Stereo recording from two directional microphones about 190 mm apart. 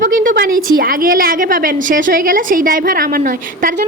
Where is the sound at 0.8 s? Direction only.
50° right (ahead or behind).